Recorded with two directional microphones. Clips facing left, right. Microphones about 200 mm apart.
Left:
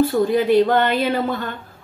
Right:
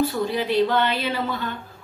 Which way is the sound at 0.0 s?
50° left (ahead or behind).